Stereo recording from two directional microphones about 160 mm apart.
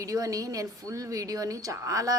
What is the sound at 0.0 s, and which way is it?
A woman's voice, 20° right (ahead or behind).